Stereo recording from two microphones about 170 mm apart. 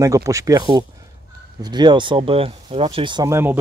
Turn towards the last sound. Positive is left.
turn(degrees=-15)  # may be behind; listen again after turning